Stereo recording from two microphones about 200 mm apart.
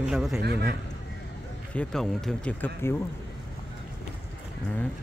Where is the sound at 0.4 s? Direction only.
55° right (ahead or behind).